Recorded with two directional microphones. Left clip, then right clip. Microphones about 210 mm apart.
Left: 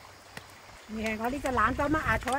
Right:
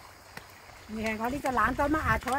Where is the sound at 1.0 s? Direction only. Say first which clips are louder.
Even; 40° right (ahead or behind).